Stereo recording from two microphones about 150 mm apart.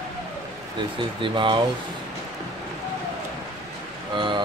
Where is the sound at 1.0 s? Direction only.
35° right (ahead or behind).